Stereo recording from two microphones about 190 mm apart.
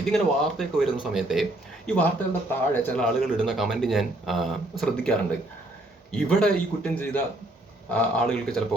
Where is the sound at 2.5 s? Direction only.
10° left (ahead or behind).